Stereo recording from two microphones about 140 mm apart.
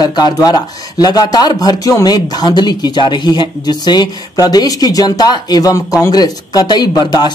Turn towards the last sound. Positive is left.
turn(degrees=30)  # may be behind; listen again after turning